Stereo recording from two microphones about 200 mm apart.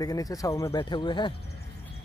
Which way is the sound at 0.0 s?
20° left (ahead or behind).